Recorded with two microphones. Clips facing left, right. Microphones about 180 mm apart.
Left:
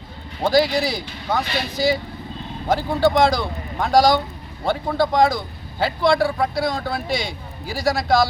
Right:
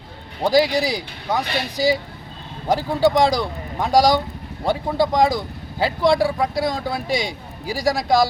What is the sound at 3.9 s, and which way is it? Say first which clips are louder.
Speech: even; 35° right (ahead or behind).